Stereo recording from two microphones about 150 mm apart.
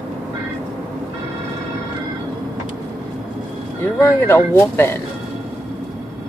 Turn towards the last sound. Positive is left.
turn(degrees=15)  # may be behind; listen again after turning